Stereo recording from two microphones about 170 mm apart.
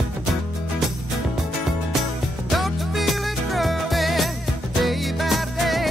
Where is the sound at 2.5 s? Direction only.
Centre (ahead or behind).